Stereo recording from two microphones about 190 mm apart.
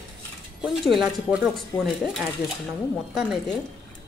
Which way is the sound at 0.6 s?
5° right (ahead or behind).